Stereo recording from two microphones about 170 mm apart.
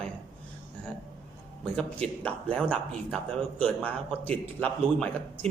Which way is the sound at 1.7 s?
5° left (ahead or behind).